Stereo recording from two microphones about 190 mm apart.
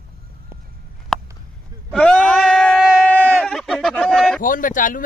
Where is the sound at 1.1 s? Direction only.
Centre (ahead or behind).